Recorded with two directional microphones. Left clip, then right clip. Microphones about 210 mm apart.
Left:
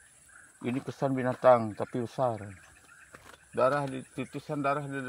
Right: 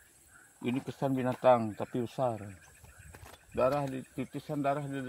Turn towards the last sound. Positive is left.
turn(degrees=15)  # may be behind; listen again after turning